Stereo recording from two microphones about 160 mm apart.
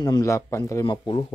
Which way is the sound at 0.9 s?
30° left (ahead or behind).